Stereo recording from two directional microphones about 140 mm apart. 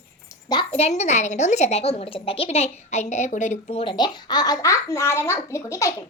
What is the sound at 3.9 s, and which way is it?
A child's voice, 30° left (ahead or behind).